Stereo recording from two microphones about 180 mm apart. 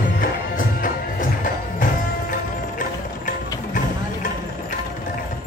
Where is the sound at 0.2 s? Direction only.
50° left (ahead or behind).